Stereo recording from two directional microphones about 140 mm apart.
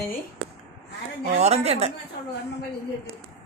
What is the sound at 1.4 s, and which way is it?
Speech, 50° right (ahead or behind).